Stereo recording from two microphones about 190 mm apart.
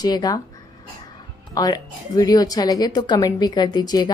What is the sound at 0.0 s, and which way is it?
Speech, 20° left (ahead or behind).